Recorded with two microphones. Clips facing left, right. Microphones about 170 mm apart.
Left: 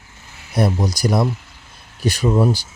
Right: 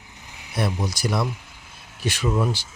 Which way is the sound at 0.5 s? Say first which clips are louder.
Left 6 dB; 40° left (ahead or behind).